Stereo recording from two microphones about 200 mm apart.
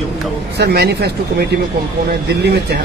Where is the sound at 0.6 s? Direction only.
55° right (ahead or behind).